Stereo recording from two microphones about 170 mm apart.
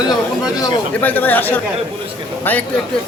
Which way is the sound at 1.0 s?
10° left (ahead or behind).